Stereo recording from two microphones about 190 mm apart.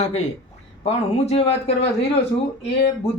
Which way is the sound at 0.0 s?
35° left (ahead or behind).